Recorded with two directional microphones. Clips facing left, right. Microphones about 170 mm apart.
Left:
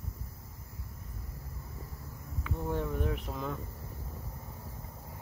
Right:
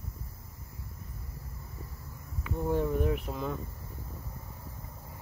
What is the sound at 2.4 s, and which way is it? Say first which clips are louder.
Speech: right 5 dB; 10° right (ahead or behind).